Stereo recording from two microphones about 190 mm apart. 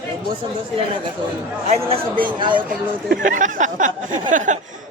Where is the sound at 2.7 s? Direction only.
45° right (ahead or behind).